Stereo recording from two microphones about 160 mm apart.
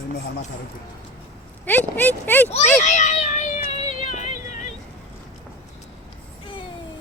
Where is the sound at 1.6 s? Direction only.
10° left (ahead or behind).